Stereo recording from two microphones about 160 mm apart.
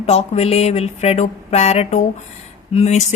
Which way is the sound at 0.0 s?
40° left (ahead or behind).